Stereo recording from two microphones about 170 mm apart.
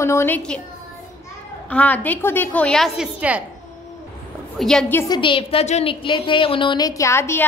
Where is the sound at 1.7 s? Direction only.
10° left (ahead or behind); by 3.4 s 10° right (ahead or behind).